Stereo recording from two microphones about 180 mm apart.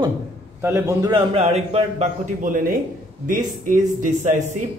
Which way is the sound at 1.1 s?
35° right (ahead or behind).